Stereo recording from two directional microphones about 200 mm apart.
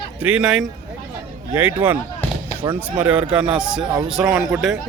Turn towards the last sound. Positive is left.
turn(degrees=0)  # may be behind; listen again after turning